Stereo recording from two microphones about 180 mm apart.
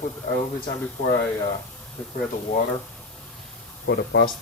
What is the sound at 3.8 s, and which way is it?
Speech, 80° left.